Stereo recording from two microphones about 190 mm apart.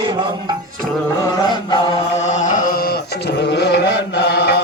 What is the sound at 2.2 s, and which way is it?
Music, 40° left (ahead or behind).